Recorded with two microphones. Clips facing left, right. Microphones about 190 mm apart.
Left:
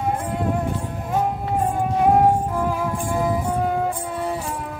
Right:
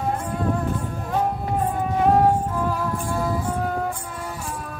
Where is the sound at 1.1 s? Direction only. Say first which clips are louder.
Left 1 dB; 10° left (ahead or behind).